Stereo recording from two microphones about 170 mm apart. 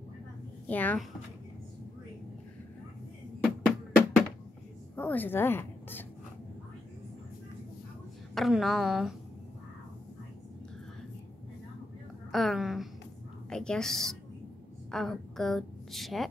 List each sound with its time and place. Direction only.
0.7 s speech: 10° left (ahead or behind)
3.4 s music: 10° left (ahead or behind)
4.9 s a woman's voice: 10° left (ahead or behind)
8.4 s a woman's voice: centre (ahead or behind)
12.3 s a woman's voice: centre (ahead or behind)